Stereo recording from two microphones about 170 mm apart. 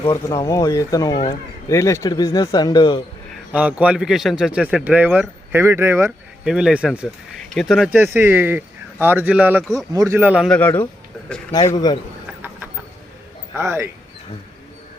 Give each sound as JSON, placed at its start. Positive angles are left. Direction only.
{"t": 0.0, "sound": "a man's voice", "side_deg": 20}
{"t": 3.5, "sound": "a man's voice", "side_deg": -5}
{"t": 6.1, "sound": "a man's voice", "side_deg": -5}
{"t": 10.5, "sound": "speech", "side_deg": 10}
{"t": 11.7, "sound": "a man's voice", "side_deg": 25}
{"t": 13.5, "sound": "a man's voice", "side_deg": -15}